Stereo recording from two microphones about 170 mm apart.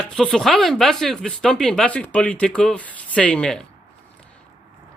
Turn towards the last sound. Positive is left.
turn(degrees=5)  # may be behind; listen again after turning